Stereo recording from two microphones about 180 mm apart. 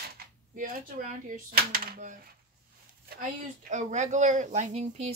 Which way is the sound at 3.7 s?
40° right (ahead or behind).